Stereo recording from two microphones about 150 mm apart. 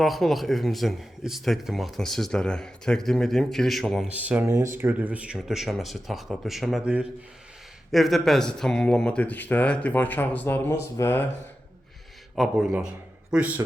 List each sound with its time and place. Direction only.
0.0 s speech: centre (ahead or behind)
4.1 s speech: 10° right (ahead or behind); by 11.3 s 15° left (ahead or behind)
12.4 s speech: 5° right (ahead or behind)